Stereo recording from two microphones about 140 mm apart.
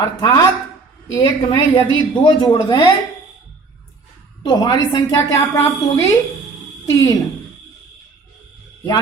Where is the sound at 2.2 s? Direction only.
30° left (ahead or behind).